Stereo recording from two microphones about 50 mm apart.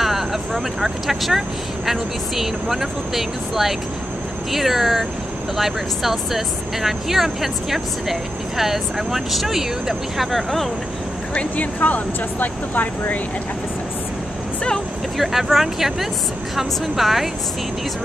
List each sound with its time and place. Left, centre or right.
0.0 s vehicle: centre
1.9 s speech: centre
11.3 s speech: left
15.1 s speech: centre